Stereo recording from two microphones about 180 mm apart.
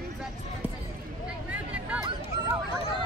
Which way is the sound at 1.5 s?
5° right (ahead or behind).